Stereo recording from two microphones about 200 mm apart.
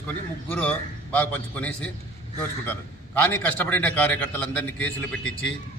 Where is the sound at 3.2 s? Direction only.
10° left (ahead or behind).